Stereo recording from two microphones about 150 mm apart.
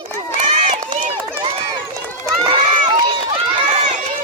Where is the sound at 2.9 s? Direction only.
30° right (ahead or behind); by 4.0 s 50° right (ahead or behind).